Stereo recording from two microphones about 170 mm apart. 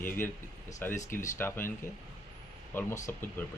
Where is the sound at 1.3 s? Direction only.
15° left (ahead or behind).